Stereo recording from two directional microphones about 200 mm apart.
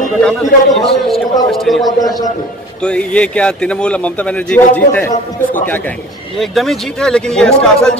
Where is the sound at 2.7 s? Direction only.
5° left (ahead or behind).